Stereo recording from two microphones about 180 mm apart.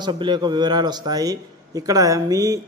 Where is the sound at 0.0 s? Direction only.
25° right (ahead or behind).